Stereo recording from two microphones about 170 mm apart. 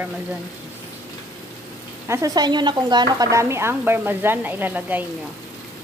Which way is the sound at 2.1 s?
20° right (ahead or behind).